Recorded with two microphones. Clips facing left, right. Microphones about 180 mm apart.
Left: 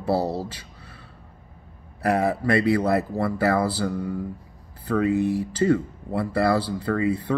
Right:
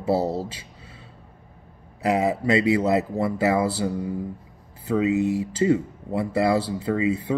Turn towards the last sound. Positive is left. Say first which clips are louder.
# even
turn(degrees=-20)  # may be behind; listen again after turning